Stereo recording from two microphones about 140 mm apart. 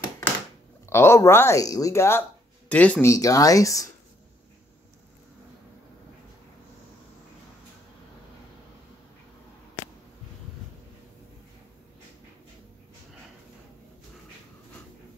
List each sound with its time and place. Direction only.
0.8 s speech: 20° left (ahead or behind)
3.1 s speech: 25° left (ahead or behind)